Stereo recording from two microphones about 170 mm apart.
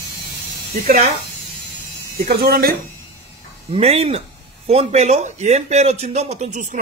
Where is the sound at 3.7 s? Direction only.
35° right (ahead or behind).